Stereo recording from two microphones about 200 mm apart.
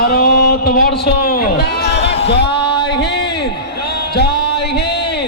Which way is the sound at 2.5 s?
25° left (ahead or behind).